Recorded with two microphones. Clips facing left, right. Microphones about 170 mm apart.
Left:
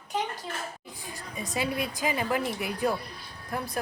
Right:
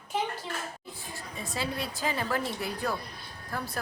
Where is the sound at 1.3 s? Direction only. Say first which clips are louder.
Left 4 dB; 20° left (ahead or behind).